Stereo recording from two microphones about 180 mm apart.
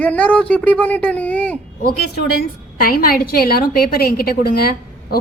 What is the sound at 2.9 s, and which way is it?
A woman's voice, 55° left (ahead or behind).